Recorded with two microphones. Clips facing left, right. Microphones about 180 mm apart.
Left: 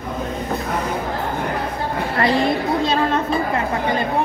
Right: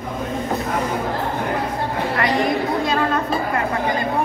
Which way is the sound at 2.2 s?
30° left (ahead or behind).